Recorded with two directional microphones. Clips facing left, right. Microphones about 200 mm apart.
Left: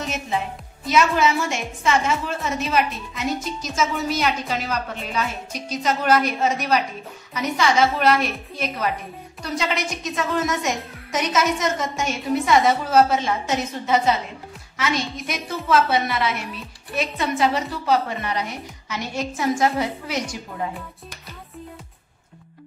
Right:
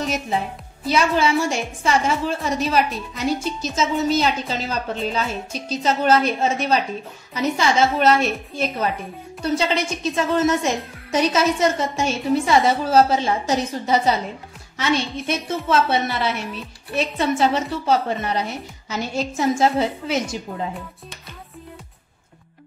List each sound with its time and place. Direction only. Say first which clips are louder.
0.8 s a woman's voice: even; 30° right (ahead or behind)